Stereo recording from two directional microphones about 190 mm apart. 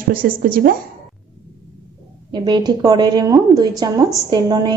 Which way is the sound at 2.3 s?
20° right (ahead or behind).